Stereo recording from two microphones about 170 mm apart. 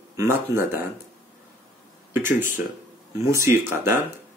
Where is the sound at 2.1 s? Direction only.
15° right (ahead or behind).